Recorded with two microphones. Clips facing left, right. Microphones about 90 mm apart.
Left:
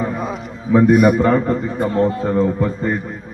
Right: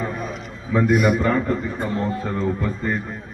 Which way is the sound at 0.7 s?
40° left (ahead or behind).